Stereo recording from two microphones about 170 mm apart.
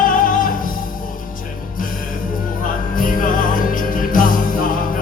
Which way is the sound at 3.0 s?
55° left (ahead or behind).